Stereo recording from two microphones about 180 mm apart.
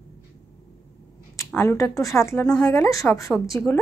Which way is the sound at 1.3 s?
15° left (ahead or behind).